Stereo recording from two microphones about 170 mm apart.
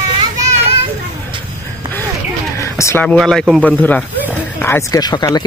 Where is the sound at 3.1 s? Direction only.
5° left (ahead or behind).